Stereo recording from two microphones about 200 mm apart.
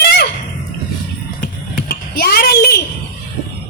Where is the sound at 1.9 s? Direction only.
50° left (ahead or behind).